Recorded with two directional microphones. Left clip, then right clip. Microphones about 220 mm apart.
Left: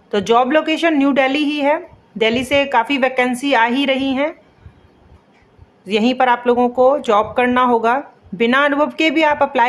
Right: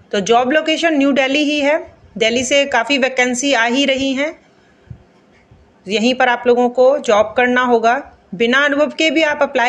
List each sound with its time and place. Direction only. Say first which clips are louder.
0.1 s speech: even; 10° left (ahead or behind)
5.9 s speech: even; 5° left (ahead or behind)